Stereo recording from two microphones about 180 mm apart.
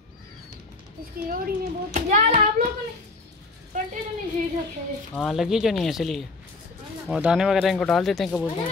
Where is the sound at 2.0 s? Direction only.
45° right (ahead or behind).